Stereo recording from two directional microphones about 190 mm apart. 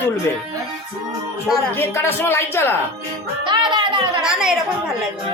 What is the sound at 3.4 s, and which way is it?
Music, 25° right (ahead or behind).